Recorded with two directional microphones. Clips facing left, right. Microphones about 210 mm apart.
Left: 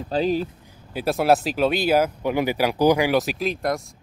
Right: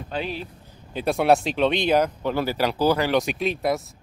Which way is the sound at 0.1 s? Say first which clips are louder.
Left 8 dB; 40° left (ahead or behind).